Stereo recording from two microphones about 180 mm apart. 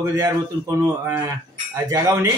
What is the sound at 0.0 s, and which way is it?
Speech, 15° right (ahead or behind).